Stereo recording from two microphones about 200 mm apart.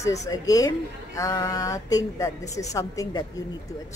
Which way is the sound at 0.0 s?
15° left (ahead or behind).